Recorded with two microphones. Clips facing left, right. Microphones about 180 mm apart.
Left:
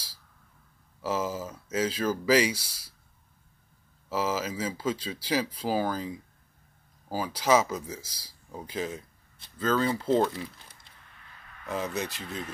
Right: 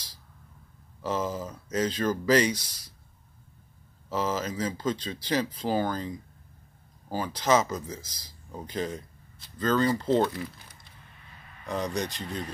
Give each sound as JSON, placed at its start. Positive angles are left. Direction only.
{"t": 1.0, "sound": "speech", "side_deg": 5}
{"t": 4.1, "sound": "speech", "side_deg": 5}
{"t": 10.4, "sound": "crumpling", "side_deg": 25}
{"t": 11.6, "sound": "speech", "side_deg": 5}